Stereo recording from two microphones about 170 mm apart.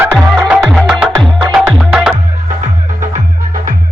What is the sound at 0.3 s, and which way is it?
Music, 5° right (ahead or behind).